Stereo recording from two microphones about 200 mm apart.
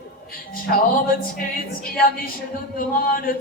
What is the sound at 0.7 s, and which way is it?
Speech, 45° left (ahead or behind).